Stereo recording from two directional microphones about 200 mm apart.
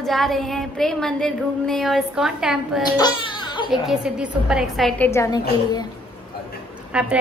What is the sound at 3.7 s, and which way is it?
A woman's voice, 5° right (ahead or behind).